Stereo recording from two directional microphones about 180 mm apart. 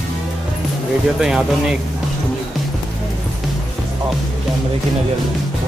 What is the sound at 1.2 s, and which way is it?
Speech, 5° right (ahead or behind).